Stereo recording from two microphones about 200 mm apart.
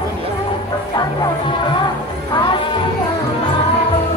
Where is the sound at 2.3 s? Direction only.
20° left (ahead or behind).